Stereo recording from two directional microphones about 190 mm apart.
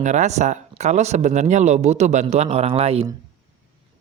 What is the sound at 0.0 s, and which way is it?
Speech, 40° right (ahead or behind).